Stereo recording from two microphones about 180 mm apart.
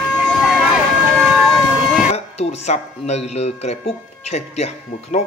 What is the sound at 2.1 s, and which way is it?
Speech, 35° left (ahead or behind).